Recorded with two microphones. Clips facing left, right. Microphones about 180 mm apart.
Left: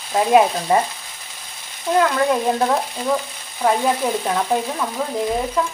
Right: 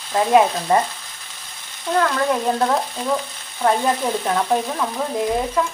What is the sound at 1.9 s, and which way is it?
Frying, 10° left (ahead or behind).